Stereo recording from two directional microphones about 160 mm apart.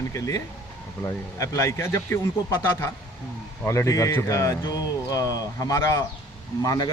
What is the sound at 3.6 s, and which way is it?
Speech, 15° left (ahead or behind).